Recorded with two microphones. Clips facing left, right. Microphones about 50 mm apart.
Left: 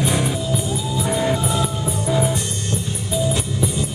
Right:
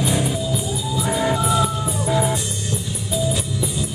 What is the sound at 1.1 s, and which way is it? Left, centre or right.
Music, centre.